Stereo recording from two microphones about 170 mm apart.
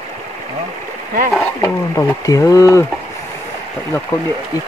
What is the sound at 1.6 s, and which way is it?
Speech, 20° left (ahead or behind).